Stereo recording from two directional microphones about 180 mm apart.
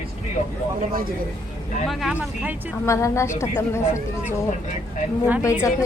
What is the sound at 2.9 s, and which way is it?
A woman's voice, 15° left (ahead or behind).